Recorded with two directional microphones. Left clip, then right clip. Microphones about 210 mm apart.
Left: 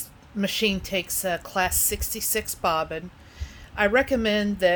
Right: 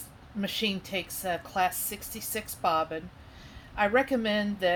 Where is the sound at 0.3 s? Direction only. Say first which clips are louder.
Left 6 dB; 50° left (ahead or behind).